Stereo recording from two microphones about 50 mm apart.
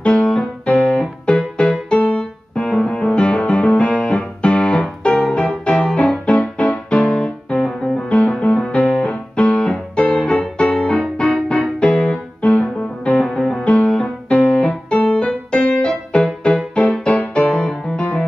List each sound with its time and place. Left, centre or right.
0.0 s music: centre
2.1 s piano: left
2.7 s music: centre
14.3 s music: left